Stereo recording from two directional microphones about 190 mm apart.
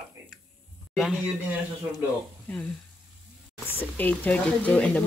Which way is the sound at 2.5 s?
5° left (ahead or behind).